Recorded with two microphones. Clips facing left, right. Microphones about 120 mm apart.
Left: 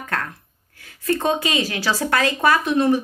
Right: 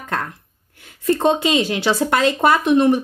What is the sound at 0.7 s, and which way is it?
Speech, 25° right (ahead or behind).